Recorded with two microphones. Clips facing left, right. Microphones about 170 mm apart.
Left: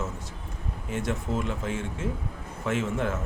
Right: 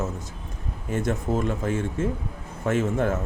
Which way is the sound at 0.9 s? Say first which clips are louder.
Right 4 dB; 45° right (ahead or behind).